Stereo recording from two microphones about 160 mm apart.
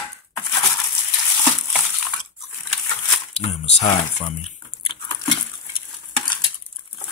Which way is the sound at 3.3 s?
40° left (ahead or behind).